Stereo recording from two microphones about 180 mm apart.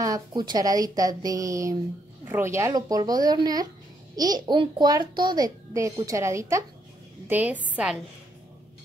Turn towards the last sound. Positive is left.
turn(degrees=-5)  # may be behind; listen again after turning